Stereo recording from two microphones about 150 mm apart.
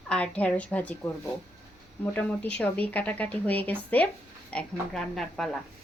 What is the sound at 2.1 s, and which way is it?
Speech, 10° left (ahead or behind).